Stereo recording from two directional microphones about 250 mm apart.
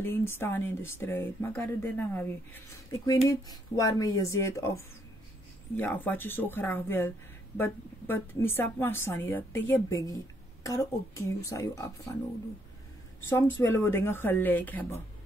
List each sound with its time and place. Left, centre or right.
0.0 s speech: centre
5.8 s speech: centre
13.3 s speech: centre